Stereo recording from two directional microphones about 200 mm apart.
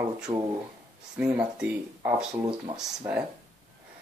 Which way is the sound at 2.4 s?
20° right (ahead or behind).